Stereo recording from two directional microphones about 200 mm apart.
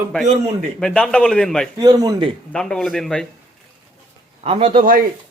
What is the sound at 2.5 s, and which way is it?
Speech, 5° left (ahead or behind).